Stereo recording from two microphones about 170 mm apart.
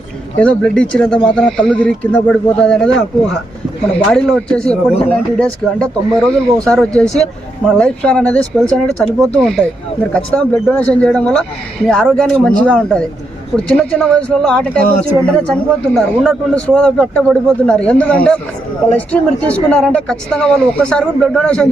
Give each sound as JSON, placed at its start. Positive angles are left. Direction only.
{"t": 0.3, "sound": "speech", "side_deg": 5}